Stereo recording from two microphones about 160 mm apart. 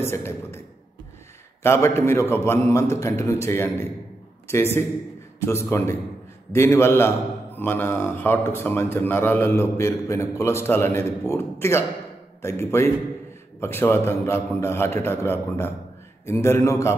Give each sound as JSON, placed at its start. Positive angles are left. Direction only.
{"t": 0.0, "sound": "a man's voice", "side_deg": 15}
{"t": 1.6, "sound": "a man's voice", "side_deg": 15}